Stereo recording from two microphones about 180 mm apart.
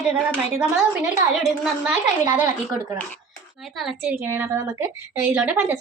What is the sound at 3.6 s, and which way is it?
A woman's voice, centre (ahead or behind).